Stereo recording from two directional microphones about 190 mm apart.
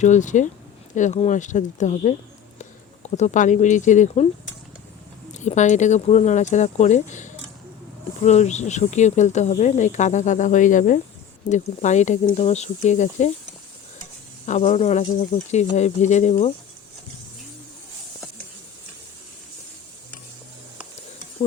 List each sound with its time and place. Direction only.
0.0 s speech: 40° left (ahead or behind)
5.3 s speech: 40° left (ahead or behind)
14.4 s speech: 35° left (ahead or behind)